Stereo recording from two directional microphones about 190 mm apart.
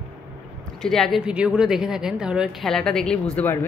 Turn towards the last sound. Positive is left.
turn(degrees=5)  # may be behind; listen again after turning